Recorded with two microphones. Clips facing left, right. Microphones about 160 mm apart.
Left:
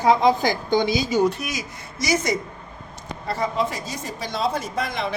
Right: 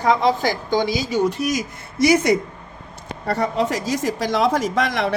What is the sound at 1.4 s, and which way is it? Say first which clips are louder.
Speech: right 8 dB; 45° right (ahead or behind).